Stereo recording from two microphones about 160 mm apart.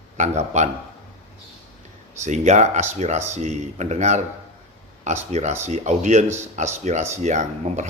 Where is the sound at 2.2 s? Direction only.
45° right (ahead or behind).